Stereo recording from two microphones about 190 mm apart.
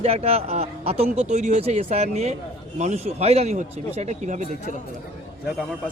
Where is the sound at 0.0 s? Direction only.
30° right (ahead or behind).